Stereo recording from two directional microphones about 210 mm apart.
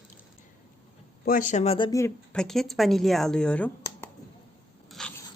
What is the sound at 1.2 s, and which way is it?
Speech, 40° left (ahead or behind).